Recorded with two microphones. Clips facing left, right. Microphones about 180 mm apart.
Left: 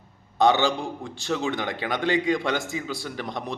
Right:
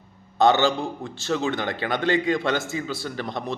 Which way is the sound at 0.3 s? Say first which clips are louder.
Right 2 dB; 15° left (ahead or behind).